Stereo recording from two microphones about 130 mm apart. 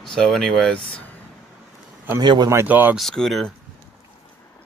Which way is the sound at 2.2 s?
35° right (ahead or behind).